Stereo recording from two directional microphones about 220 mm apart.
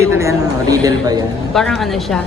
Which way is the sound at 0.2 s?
15° right (ahead or behind).